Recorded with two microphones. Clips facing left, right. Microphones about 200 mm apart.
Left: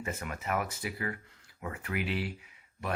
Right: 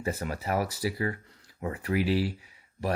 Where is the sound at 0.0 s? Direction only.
35° right (ahead or behind).